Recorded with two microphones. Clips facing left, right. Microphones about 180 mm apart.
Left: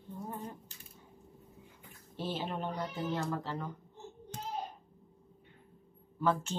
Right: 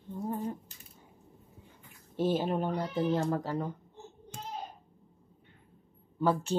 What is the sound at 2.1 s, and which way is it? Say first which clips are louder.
Speech: right 8 dB; 45° right (ahead or behind).